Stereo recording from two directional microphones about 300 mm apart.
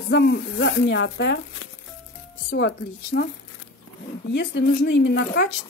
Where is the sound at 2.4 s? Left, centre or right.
Left.